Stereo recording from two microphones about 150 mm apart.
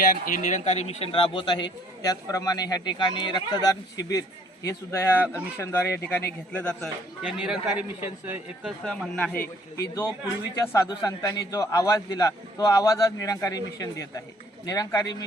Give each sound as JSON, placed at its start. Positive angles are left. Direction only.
{"t": 0.1, "sound": "a man's voice", "side_deg": 60}
{"t": 7.2, "sound": "a man's voice", "side_deg": -5}